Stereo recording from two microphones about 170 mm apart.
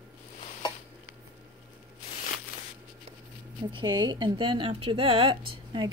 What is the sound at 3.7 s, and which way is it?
A woman's voice, 25° right (ahead or behind).